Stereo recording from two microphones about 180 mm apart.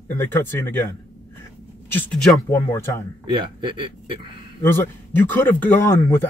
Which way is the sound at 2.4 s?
15° left (ahead or behind).